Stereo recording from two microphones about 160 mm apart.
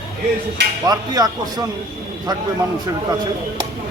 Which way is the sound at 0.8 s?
25° right (ahead or behind).